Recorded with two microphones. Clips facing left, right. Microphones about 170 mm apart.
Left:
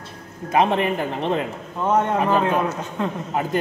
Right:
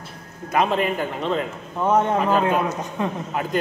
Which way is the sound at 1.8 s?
15° right (ahead or behind).